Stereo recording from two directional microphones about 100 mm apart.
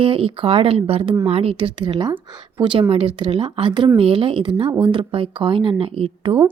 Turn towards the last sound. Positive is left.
turn(degrees=-65)  # may be behind; listen again after turning